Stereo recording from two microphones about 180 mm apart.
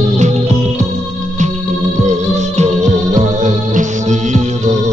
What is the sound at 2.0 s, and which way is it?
Music, 40° right (ahead or behind).